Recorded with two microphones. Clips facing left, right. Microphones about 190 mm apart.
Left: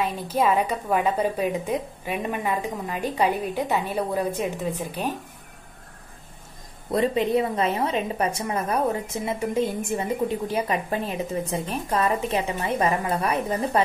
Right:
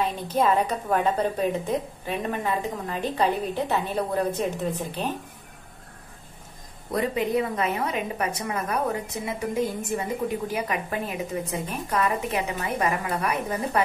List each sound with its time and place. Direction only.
0.0 s a woman's voice: 10° left (ahead or behind)
6.9 s a woman's voice: 25° left (ahead or behind)